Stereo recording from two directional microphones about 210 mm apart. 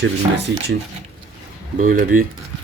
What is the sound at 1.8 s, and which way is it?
Speech, 40° right (ahead or behind).